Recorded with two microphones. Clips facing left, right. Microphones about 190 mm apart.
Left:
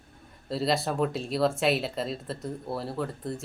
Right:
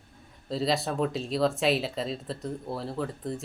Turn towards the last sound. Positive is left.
turn(degrees=0)  # may be behind; listen again after turning